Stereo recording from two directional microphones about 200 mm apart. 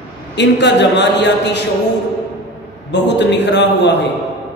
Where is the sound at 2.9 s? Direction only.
60° left (ahead or behind).